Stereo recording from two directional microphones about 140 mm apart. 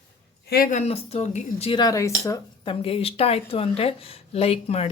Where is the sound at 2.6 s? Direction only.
40° left (ahead or behind).